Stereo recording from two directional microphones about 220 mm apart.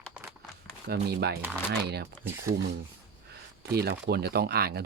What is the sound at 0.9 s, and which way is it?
Speech, 45° right (ahead or behind).